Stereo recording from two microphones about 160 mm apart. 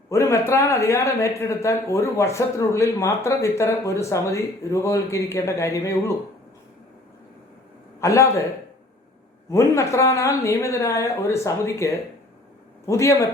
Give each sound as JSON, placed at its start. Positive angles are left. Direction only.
{"t": 0.1, "sound": "speech", "side_deg": 15}
{"t": 8.0, "sound": "speech", "side_deg": 15}
{"t": 9.5, "sound": "a man's voice", "side_deg": 20}